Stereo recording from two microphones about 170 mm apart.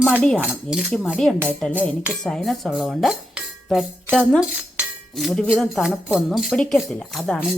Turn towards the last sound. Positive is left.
turn(degrees=0)  # may be behind; listen again after turning